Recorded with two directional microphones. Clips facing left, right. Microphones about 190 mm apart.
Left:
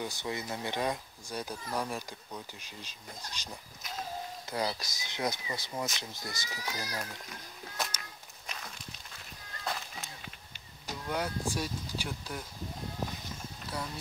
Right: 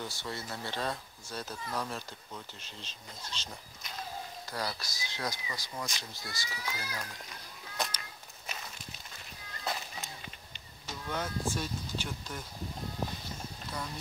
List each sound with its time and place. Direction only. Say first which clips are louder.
0.0 s speech: left 3 dB; 15° left (ahead or behind)
4.5 s speech: left 4 dB; 20° left (ahead or behind)
6.6 s speech: left 2 dB; 40° left (ahead or behind)
7.7 s a sound: right 1 dB; 5° left (ahead or behind)
8.5 s walk: right 1 dB; 5° right (ahead or behind)
11.1 s speech: left 1 dB; 10° left (ahead or behind)